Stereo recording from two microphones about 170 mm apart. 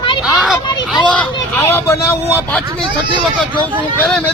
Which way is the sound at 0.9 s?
Centre (ahead or behind).